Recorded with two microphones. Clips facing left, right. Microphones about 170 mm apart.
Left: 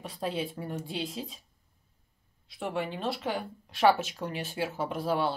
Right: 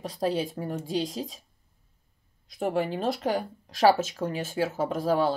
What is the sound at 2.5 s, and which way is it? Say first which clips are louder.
Speech: right 6 dB; 45° right (ahead or behind).